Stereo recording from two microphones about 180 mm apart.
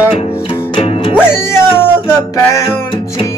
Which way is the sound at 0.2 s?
35° left (ahead or behind).